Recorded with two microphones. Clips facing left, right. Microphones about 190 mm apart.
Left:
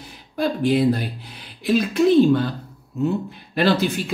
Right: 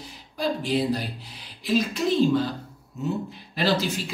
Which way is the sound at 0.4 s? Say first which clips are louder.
Left 6 dB; 55° left (ahead or behind).